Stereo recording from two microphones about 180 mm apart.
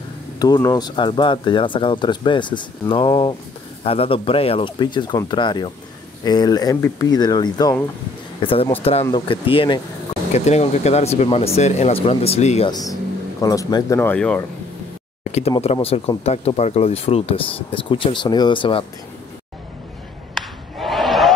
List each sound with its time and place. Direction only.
0.4 s speech: 20° left (ahead or behind)
8.4 s speech: 30° left (ahead or behind)
12.6 s speech: 20° left (ahead or behind)
15.6 s speech: 35° left (ahead or behind)
20.3 s a sound: centre (ahead or behind)